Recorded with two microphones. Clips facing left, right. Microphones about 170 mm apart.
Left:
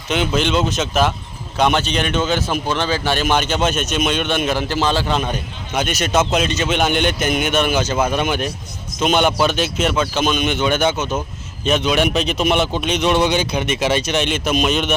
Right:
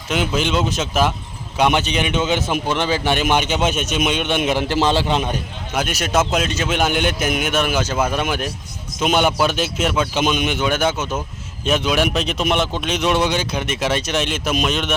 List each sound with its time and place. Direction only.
0.1 s a man's voice: 5° right (ahead or behind); by 5.3 s 20° right (ahead or behind)
5.3 s speech: 5° right (ahead or behind)
10.2 s speech: 15° right (ahead or behind); by 14.9 s centre (ahead or behind)